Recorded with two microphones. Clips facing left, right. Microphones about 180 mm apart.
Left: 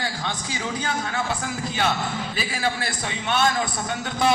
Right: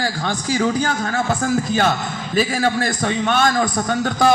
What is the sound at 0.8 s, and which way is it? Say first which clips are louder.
A man's voice: right 6 dB; 45° right (ahead or behind).